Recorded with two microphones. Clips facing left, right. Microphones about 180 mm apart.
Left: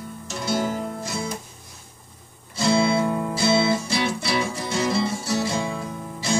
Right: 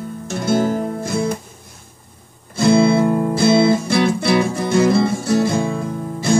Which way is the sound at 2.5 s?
55° right (ahead or behind).